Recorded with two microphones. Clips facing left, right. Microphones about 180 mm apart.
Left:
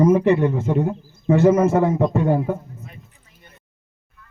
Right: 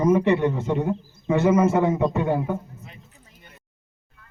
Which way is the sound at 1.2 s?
50° left (ahead or behind).